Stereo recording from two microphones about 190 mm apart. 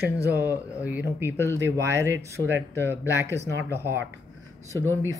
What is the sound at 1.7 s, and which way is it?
Speech, 15° right (ahead or behind).